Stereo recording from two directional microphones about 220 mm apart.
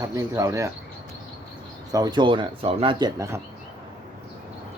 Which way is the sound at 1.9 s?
15° right (ahead or behind).